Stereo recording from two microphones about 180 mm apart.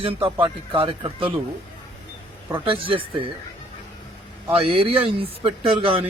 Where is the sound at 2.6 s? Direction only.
30° right (ahead or behind).